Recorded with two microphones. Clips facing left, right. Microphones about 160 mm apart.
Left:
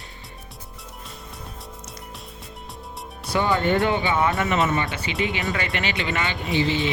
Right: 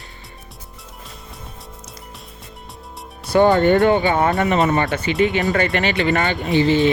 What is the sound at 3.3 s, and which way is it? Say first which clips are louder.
Speech: right 8 dB; 50° right (ahead or behind).